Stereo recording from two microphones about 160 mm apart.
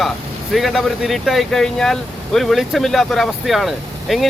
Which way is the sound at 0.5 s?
Centre (ahead or behind).